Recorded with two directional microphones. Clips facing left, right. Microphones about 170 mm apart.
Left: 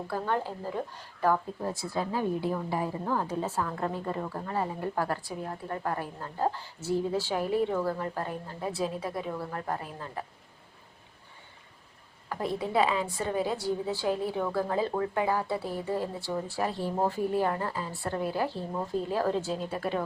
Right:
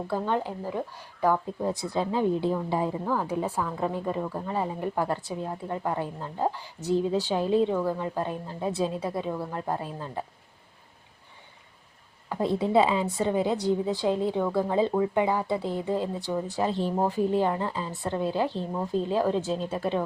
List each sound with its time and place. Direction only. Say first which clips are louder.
0.1 s a woman's voice: right 2 dB; 15° right (ahead or behind)
3.0 s a woman's voice: right 2 dB; 5° right (ahead or behind)
12.3 s a woman's voice: right 6 dB; 25° right (ahead or behind)